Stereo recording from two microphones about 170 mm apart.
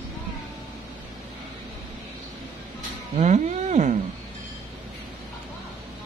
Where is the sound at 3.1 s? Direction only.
40° right (ahead or behind).